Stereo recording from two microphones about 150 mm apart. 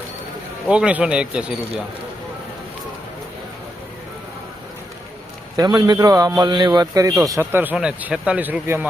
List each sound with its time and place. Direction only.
0.7 s a man's voice: 10° right (ahead or behind)
5.5 s a man's voice: 25° right (ahead or behind)